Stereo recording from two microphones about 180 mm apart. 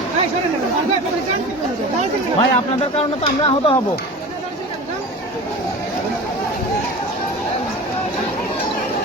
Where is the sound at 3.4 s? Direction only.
30° left (ahead or behind).